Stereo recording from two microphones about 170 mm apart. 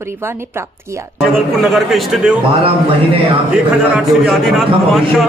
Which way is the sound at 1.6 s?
Centre (ahead or behind).